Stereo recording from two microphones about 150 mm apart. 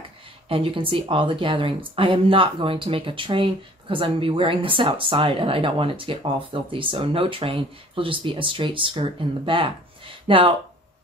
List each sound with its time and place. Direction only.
0.5 s speech: 35° right (ahead or behind)
10.2 s speech: 35° right (ahead or behind)